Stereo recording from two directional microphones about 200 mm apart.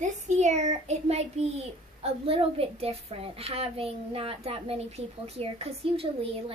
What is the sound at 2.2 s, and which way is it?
A child's voice, 30° right (ahead or behind).